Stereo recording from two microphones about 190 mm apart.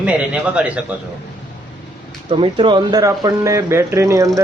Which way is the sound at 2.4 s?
25° right (ahead or behind).